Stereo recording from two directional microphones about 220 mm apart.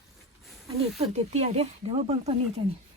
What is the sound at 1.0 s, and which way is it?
Speech, 30° right (ahead or behind).